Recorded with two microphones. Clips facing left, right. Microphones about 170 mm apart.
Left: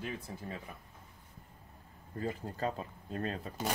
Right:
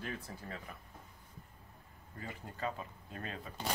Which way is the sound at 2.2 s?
35° left (ahead or behind).